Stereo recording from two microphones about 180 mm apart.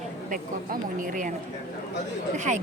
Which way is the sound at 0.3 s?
50° right (ahead or behind).